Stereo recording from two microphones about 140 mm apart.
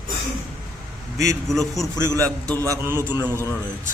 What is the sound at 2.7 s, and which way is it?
Speech, 15° right (ahead or behind).